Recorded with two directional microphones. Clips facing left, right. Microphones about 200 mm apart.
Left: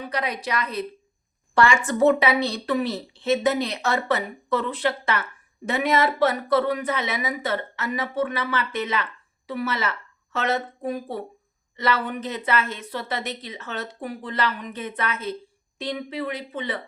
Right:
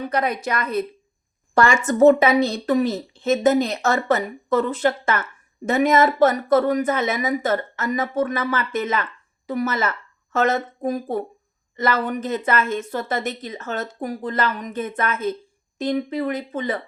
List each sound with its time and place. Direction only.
0.1 s speech: 50° right (ahead or behind)